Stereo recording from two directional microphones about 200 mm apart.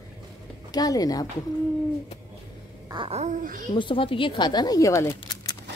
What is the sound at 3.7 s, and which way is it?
Speech, 25° left (ahead or behind).